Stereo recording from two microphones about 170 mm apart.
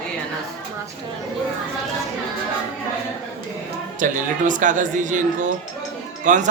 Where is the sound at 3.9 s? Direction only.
50° right (ahead or behind).